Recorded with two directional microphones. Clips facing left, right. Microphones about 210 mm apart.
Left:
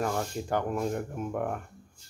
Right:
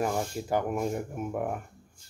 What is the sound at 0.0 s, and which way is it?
Speech, 10° right (ahead or behind).